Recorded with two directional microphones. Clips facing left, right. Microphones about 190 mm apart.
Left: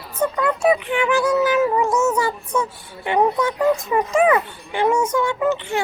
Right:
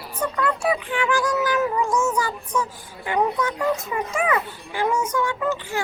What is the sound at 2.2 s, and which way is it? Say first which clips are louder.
A woman's voice: left 3 dB; 25° left (ahead or behind).